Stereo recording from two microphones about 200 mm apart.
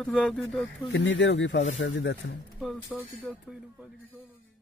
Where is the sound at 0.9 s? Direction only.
65° left (ahead or behind).